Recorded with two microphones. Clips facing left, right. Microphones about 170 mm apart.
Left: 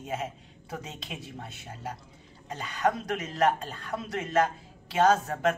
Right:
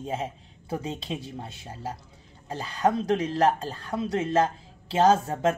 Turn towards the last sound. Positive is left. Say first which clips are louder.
# right 3 dB
turn(degrees=-30)  # may be behind; listen again after turning